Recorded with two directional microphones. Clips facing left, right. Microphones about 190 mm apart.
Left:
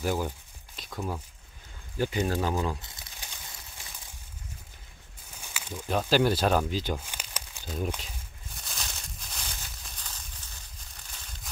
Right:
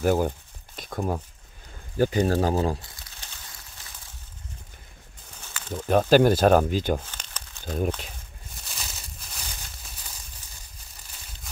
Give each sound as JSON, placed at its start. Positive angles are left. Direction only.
{"t": 0.0, "sound": "speech", "side_deg": -50}
{"t": 3.2, "sound": "a sound", "side_deg": 15}
{"t": 5.7, "sound": "speech", "side_deg": -50}
{"t": 7.1, "sound": "crumpling", "side_deg": 10}
{"t": 7.6, "sound": "speech", "side_deg": -55}
{"t": 8.5, "sound": "a sound", "side_deg": 0}